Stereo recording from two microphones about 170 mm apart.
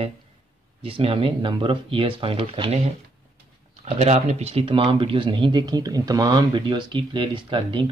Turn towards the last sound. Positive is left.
turn(degrees=-30)  # may be behind; listen again after turning